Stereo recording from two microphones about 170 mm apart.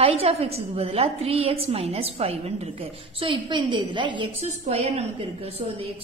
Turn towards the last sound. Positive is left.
turn(degrees=-40)  # may be behind; listen again after turning